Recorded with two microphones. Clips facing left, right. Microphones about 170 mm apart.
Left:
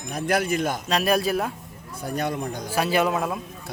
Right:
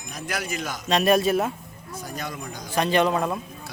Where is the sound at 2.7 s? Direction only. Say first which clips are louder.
Right 1 dB; 5° left (ahead or behind).